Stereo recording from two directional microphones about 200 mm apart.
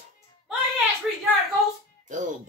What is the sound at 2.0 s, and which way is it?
Music, 40° right (ahead or behind).